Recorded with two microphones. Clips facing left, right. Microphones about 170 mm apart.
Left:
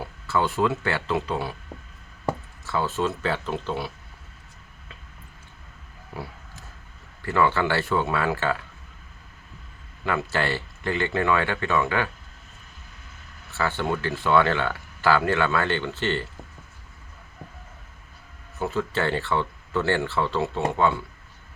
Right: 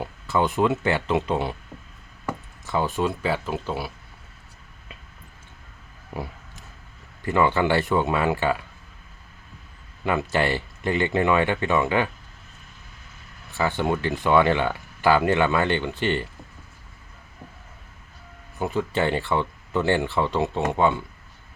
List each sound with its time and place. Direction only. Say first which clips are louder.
0.0 s speech: right 2 dB; 20° right (ahead or behind)
2.6 s speech: right 1 dB; 15° right (ahead or behind)
7.3 s speech: right 2 dB; 15° right (ahead or behind)
10.1 s speech: right 3 dB; 15° right (ahead or behind)
13.5 s speech: right 2 dB; 15° right (ahead or behind)
18.6 s speech: right 2 dB; 15° right (ahead or behind)